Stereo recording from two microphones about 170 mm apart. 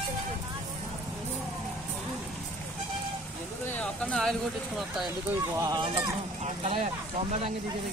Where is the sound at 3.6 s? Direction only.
10° left (ahead or behind).